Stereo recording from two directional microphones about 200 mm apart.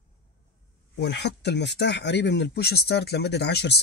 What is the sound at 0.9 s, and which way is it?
Speech, 60° left (ahead or behind).